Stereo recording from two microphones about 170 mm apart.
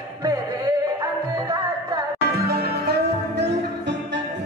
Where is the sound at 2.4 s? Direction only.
70° right (ahead or behind).